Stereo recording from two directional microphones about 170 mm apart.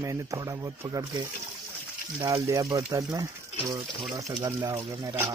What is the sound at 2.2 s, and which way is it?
Speech, 20° right (ahead or behind).